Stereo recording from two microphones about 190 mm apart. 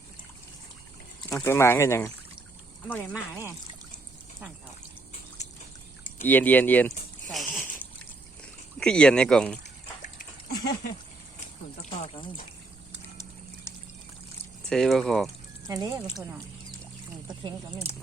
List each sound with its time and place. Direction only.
1.3 s speech: 15° left (ahead or behind)
6.1 s a sound: 10° left (ahead or behind)
8.8 s speech: 5° left (ahead or behind)
10.0 s dog: 50° left (ahead or behind)
14.7 s speech: centre (ahead or behind)
15.6 s speech: 20° right (ahead or behind)